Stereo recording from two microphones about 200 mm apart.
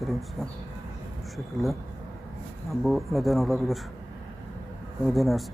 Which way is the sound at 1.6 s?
15° right (ahead or behind).